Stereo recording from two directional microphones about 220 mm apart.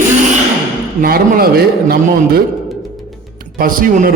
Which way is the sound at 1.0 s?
45° right (ahead or behind).